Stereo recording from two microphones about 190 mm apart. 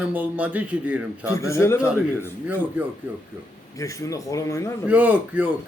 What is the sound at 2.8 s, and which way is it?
Speech, 10° right (ahead or behind).